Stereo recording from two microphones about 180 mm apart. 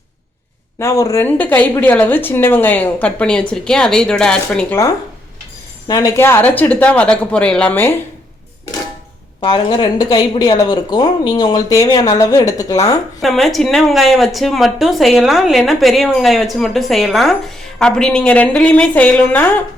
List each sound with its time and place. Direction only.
0.8 s speech: 15° left (ahead or behind)
5.9 s speech: 20° left (ahead or behind)
9.4 s speech: 25° left (ahead or behind)
13.2 s a woman's voice: centre (ahead or behind)